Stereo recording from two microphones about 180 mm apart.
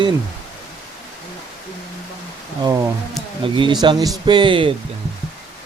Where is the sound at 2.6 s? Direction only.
20° right (ahead or behind).